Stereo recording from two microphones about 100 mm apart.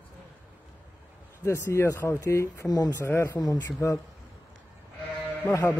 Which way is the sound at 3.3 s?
40° left (ahead or behind).